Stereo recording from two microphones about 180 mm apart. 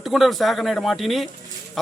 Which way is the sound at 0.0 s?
Centre (ahead or behind).